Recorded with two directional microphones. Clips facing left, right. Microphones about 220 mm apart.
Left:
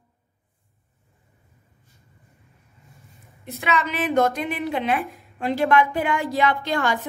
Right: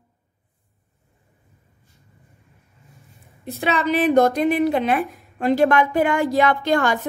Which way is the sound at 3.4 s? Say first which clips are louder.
Right 3 dB; 35° right (ahead or behind).